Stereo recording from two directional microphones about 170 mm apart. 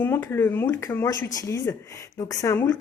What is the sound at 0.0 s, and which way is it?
Speech, 15° left (ahead or behind).